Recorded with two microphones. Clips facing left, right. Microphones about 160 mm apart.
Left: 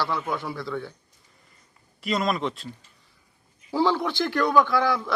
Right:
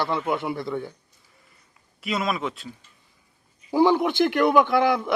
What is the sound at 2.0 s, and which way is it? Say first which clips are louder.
Speech: left 1 dB; centre (ahead or behind).